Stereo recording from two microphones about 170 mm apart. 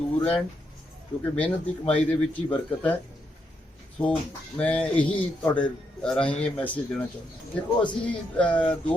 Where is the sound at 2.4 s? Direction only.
10° left (ahead or behind).